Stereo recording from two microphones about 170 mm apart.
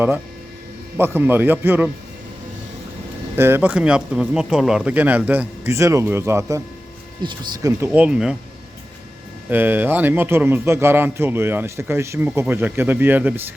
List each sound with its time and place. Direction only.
0.9 s a man's voice: 15° right (ahead or behind)
3.3 s a man's voice: 15° right (ahead or behind)
7.2 s speech: 25° right (ahead or behind)
7.9 s speech: 5° right (ahead or behind)
9.5 s a man's voice: 10° right (ahead or behind)